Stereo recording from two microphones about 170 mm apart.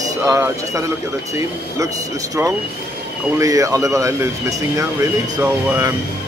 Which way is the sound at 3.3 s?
20° right (ahead or behind).